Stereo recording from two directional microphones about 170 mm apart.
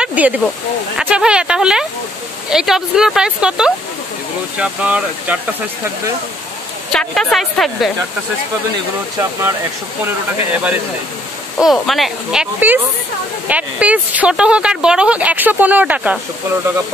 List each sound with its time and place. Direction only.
0.0 s snake: 10° right (ahead or behind)
0.9 s a woman's voice: 5° right (ahead or behind)
6.9 s speech: 5° left (ahead or behind)
9.2 s a woman's voice: 15° right (ahead or behind)
11.5 s a woman's voice: centre (ahead or behind)